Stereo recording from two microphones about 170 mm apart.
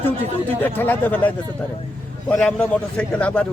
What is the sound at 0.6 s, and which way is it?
Speech, 10° left (ahead or behind).